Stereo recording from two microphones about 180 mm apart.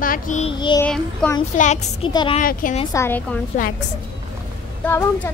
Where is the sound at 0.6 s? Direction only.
25° left (ahead or behind).